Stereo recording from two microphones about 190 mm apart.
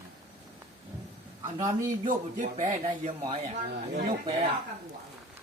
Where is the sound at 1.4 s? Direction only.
20° right (ahead or behind).